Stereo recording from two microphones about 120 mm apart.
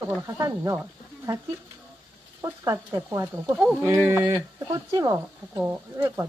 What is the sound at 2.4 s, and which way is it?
Speech, 30° right (ahead or behind).